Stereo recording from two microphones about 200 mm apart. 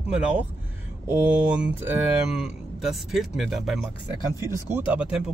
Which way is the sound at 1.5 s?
10° right (ahead or behind).